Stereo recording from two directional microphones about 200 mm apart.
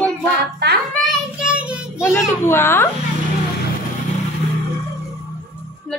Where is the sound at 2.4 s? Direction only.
10° left (ahead or behind).